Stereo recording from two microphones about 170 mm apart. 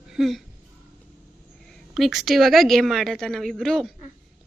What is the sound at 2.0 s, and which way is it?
A woman's voice, centre (ahead or behind).